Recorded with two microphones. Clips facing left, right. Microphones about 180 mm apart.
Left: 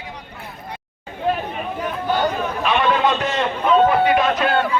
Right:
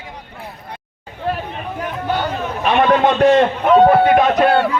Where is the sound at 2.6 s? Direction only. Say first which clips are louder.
Right 5 dB; 50° right (ahead or behind).